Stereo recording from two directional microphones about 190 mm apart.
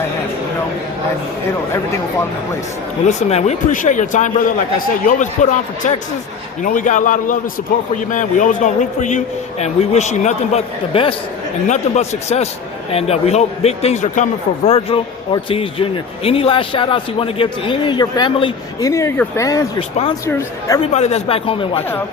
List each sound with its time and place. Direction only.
3.1 s a man's voice: 35° left (ahead or behind); by 20.8 s 20° left (ahead or behind)
20.9 s a man's voice: 35° left (ahead or behind)